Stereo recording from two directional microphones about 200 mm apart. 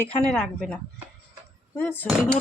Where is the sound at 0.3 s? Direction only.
5° left (ahead or behind).